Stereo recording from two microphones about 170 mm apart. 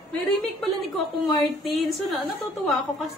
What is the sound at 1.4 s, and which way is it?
Speech, centre (ahead or behind).